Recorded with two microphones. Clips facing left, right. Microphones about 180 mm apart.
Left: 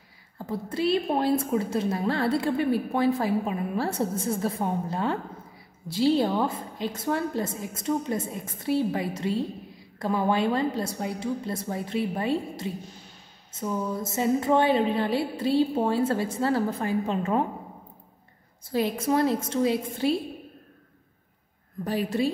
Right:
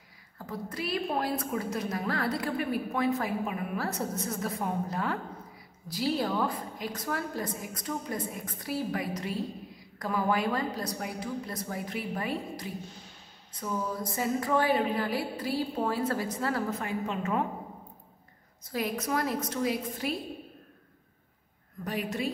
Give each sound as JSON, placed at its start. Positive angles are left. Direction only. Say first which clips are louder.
{"t": 0.5, "sound": "a woman's voice", "louder": "left 8 dB", "side_deg": 25}
{"t": 18.6, "sound": "a woman's voice", "louder": "left 5 dB", "side_deg": 30}
{"t": 21.8, "sound": "a woman's voice", "louder": "left 6 dB", "side_deg": 30}